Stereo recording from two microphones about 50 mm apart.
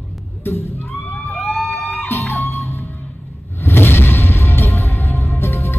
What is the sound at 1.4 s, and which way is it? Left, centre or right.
Vehicle, centre.